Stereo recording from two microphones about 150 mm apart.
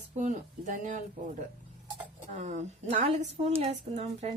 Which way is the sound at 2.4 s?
50° right (ahead or behind).